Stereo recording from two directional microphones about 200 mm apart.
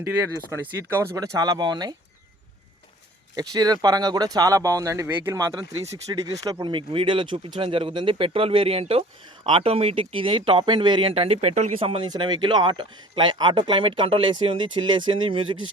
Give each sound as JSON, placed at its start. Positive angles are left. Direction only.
{"t": 0.5, "sound": "speech", "side_deg": -15}
{"t": 3.3, "sound": "speech", "side_deg": -20}